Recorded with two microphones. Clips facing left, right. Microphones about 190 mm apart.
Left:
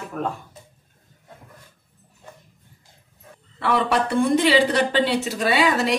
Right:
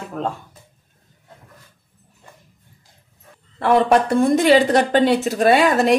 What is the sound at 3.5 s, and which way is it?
Speech, 45° right (ahead or behind).